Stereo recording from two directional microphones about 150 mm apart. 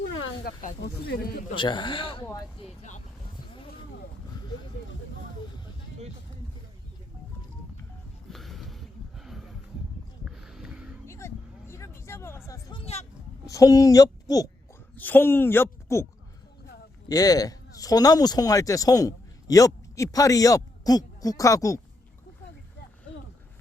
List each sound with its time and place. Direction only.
0.4 s speech: 85° left
1.5 s a man's voice: 30° left (ahead or behind)
8.3 s a sound: centre (ahead or behind)
11.0 s vehicle: 20° left (ahead or behind)
12.7 s vehicle: 45° left (ahead or behind)
13.4 s a woman's voice: 20° left (ahead or behind)
14.9 s a woman's voice: 10° left (ahead or behind)
17.1 s speech: 25° left (ahead or behind)